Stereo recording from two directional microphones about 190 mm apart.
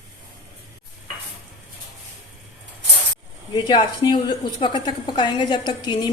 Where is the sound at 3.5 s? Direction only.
25° left (ahead or behind).